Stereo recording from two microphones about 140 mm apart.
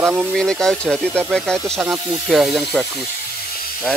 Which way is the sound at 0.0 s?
10° right (ahead or behind).